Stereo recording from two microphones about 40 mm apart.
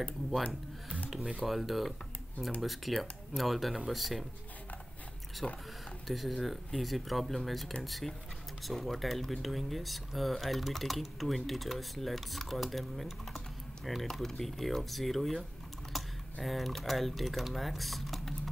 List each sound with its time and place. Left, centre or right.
1.4 s speech: centre
5.4 s speech: left
6.0 s speech: centre
15.9 s typing: centre
16.4 s speech: centre